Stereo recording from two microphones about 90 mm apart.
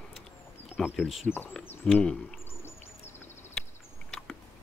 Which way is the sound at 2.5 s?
25° left (ahead or behind).